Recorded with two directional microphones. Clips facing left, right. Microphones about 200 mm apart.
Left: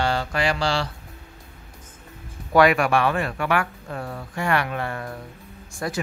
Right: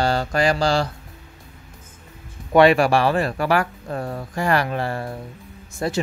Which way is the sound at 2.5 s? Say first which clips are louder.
Right 3 dB; 30° right (ahead or behind).